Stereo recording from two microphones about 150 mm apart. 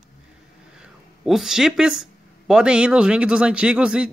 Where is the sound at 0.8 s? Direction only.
Centre (ahead or behind).